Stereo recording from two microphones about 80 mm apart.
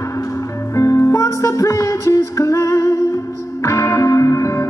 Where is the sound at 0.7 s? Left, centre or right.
Left.